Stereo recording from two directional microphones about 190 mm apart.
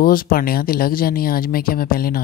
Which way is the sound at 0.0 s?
50° left (ahead or behind).